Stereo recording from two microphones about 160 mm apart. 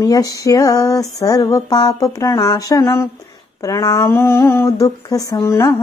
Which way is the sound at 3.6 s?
20° left (ahead or behind).